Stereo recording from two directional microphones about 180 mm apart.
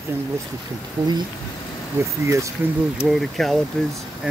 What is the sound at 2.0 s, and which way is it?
Speech, 15° right (ahead or behind).